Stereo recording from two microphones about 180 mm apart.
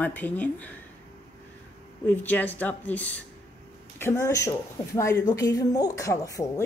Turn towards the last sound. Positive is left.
turn(degrees=20)  # may be behind; listen again after turning